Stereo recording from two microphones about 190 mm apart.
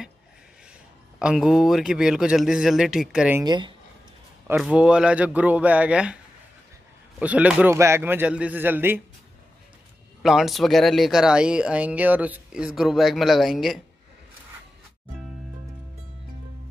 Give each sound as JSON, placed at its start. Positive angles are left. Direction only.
{"t": 1.2, "sound": "speech", "side_deg": 0}
{"t": 3.4, "sound": "speech", "side_deg": -25}
{"t": 4.5, "sound": "a man's voice", "side_deg": -5}
{"t": 7.2, "sound": "a man's voice", "side_deg": -5}
{"t": 10.2, "sound": "speech", "side_deg": 0}